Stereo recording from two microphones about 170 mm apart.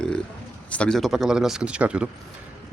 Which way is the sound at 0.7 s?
5° left (ahead or behind).